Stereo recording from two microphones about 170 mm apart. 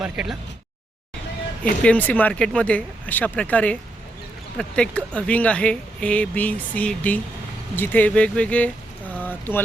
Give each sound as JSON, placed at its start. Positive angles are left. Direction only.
{"t": 0.0, "sound": "speech", "side_deg": -5}
{"t": 1.8, "sound": "speech", "side_deg": 10}